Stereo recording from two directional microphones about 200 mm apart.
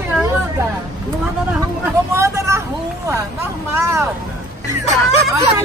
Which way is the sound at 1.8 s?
15° right (ahead or behind).